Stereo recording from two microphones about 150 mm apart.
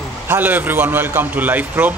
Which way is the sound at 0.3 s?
10° right (ahead or behind).